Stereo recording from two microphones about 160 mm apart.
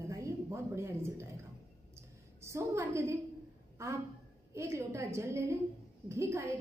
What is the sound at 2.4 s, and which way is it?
A woman's voice, 15° right (ahead or behind).